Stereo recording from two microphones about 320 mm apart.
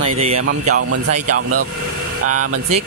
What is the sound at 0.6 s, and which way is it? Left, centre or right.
Speech, right.